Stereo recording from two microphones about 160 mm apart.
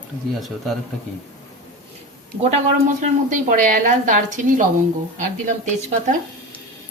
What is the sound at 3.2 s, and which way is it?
A woman's voice, 50° right (ahead or behind).